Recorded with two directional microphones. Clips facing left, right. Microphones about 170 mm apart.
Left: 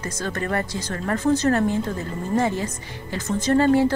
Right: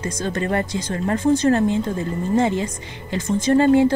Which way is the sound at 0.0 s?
20° right (ahead or behind).